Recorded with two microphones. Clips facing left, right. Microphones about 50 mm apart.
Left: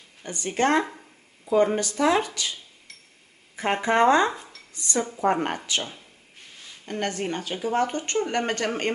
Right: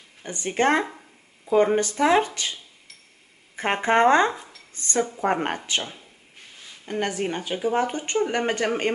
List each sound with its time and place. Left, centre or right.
0.2 s speech: right
3.5 s speech: right
4.3 s speech: centre
4.7 s speech: right
6.9 s speech: centre